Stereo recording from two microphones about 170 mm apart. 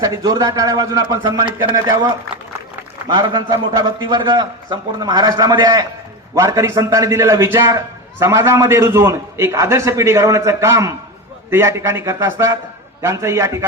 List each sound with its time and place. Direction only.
0.0 s a man's voice: 20° right (ahead or behind)